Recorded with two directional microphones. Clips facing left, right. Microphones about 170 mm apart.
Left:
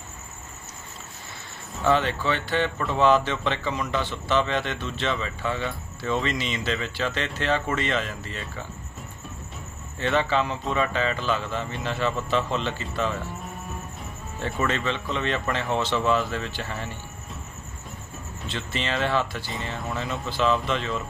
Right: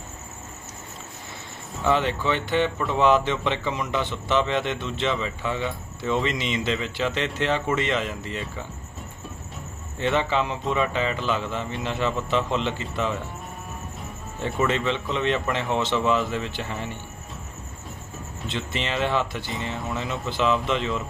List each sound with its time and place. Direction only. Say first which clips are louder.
1.8 s speech: even; 15° right (ahead or behind)
10.0 s speech: even; 20° right (ahead or behind)
15.1 s speech: right 2 dB; 20° right (ahead or behind)
18.4 s speech: right 1 dB; 20° right (ahead or behind)